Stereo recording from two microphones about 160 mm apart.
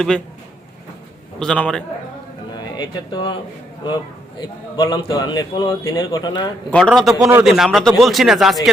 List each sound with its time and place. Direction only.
1.4 s speech: 5° left (ahead or behind)
2.6 s speech: 30° left (ahead or behind)
4.4 s a man's voice: 25° left (ahead or behind)
6.7 s speech: 5° left (ahead or behind)
7.2 s speech: 15° right (ahead or behind)
7.4 s speech: centre (ahead or behind)